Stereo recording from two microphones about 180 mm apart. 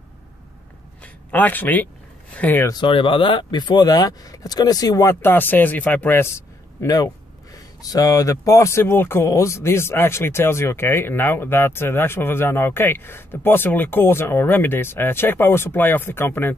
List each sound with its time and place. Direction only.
1.0 s speech: 10° left (ahead or behind)
2.7 s speech: 30° left (ahead or behind); by 16.5 s 10° left (ahead or behind)